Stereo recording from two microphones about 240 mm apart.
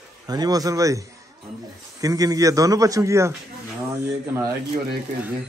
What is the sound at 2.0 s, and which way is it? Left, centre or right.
Speech, centre.